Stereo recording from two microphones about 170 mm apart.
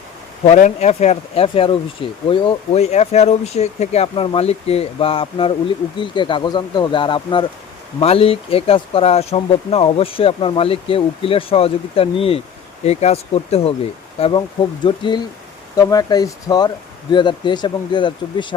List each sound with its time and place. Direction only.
0.4 s speech: 40° left (ahead or behind)